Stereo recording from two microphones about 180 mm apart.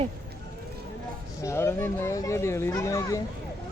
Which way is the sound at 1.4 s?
15° left (ahead or behind).